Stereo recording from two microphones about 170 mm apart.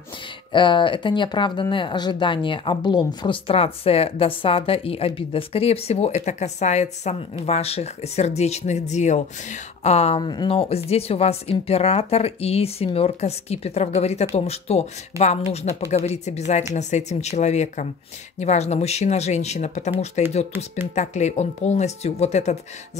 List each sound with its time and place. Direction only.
0.5 s speech: 30° left (ahead or behind)
20.5 s speech: 15° right (ahead or behind)
20.9 s speech: 45° left (ahead or behind)